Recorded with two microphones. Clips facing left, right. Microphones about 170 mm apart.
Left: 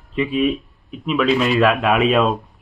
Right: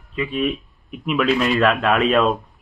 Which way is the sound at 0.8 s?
Centre (ahead or behind).